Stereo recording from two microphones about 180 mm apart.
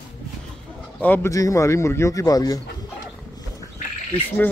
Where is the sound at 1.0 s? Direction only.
10° left (ahead or behind).